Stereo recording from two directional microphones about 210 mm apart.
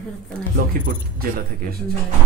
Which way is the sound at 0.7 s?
45° right (ahead or behind).